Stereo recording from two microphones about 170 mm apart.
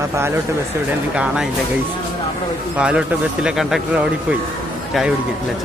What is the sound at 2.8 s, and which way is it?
A man's voice, 5° right (ahead or behind).